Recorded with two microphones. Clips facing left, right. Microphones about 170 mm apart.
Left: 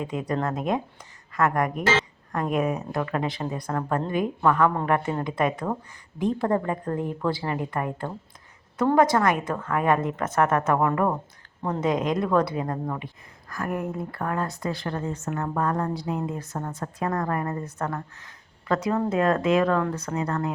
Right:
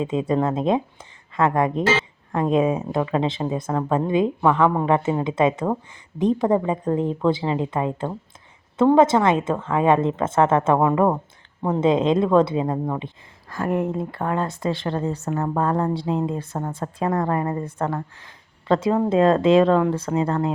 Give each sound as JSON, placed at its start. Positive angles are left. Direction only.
{"t": 0.0, "sound": "speech", "side_deg": -25}